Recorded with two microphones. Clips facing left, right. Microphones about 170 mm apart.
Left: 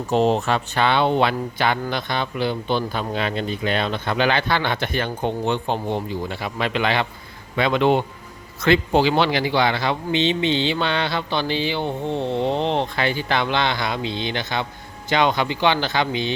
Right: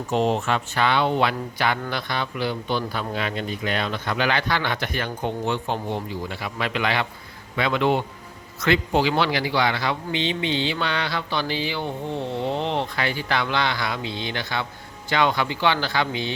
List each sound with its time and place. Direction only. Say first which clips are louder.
0.1 s speech: left 3 dB; 35° left (ahead or behind)